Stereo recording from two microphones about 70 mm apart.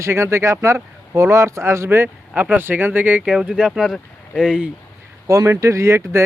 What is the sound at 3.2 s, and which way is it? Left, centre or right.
Speech, centre.